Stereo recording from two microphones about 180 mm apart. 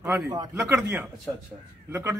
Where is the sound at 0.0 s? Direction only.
20° right (ahead or behind).